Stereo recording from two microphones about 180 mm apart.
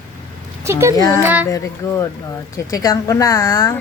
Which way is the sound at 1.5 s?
15° left (ahead or behind).